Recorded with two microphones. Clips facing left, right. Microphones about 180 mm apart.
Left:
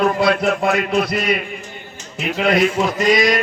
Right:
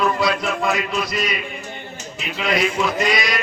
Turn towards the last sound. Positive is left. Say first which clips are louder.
# left 6 dB
turn(degrees=45)  # may be behind; listen again after turning